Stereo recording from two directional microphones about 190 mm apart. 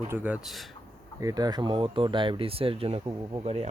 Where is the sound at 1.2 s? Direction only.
20° right (ahead or behind).